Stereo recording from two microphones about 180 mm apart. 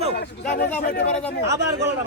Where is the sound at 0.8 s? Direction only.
60° left (ahead or behind).